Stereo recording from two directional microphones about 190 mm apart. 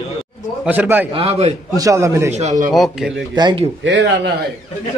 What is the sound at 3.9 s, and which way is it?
Speech, 65° right (ahead or behind).